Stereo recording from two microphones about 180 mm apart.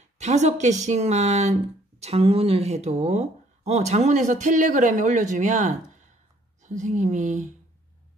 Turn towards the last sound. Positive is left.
turn(degrees=-45)  # may be behind; listen again after turning